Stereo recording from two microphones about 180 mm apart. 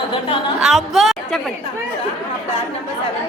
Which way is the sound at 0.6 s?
Centre (ahead or behind).